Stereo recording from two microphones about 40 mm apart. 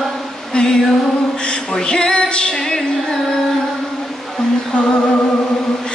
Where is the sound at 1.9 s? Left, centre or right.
Centre.